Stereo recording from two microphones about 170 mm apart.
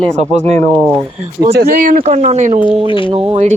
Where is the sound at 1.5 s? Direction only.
60° right (ahead or behind).